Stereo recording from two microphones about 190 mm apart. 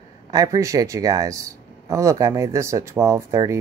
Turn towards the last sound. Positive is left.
turn(degrees=-15)  # may be behind; listen again after turning